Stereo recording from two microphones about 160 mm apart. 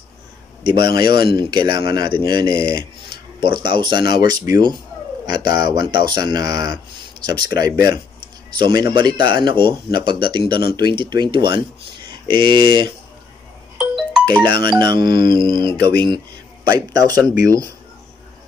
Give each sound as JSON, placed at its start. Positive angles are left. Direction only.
{"t": 0.7, "sound": "speech", "side_deg": -30}
{"t": 13.7, "sound": "ringtone", "side_deg": -5}
{"t": 14.7, "sound": "speech", "side_deg": -30}